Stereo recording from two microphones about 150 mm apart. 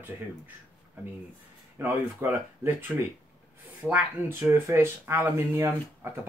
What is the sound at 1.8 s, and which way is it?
Speech, 15° right (ahead or behind).